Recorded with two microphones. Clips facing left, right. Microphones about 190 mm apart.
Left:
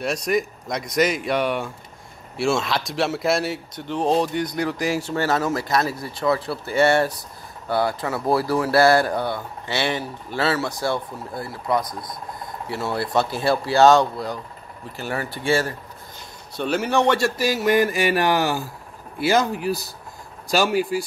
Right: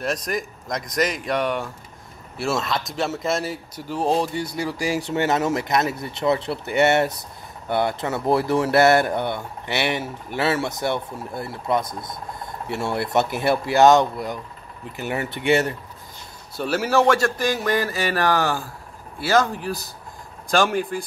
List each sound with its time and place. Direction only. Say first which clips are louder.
0.0 s speech: left 3 dB; centre (ahead or behind); by 15.7 s 20° right (ahead or behind)
16.5 s speech: right 1 dB; 5° right (ahead or behind)
17.4 s a sound: left 3 dB; 5° left (ahead or behind)
20.5 s speech: left 1 dB; 5° left (ahead or behind)